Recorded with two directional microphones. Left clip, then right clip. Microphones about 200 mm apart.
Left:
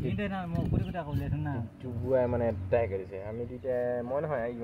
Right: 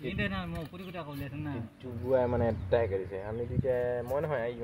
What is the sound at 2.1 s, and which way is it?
Speech, 10° right (ahead or behind).